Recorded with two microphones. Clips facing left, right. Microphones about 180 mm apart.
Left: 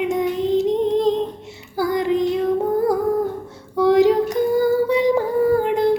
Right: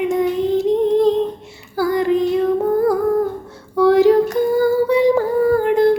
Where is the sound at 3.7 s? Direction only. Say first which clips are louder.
Right 3 dB; 20° left (ahead or behind).